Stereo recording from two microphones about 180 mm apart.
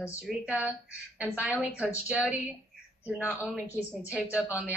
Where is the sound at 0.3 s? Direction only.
5° right (ahead or behind).